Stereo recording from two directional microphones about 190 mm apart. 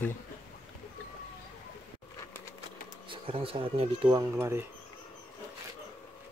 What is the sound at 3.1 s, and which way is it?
Speech, 30° right (ahead or behind).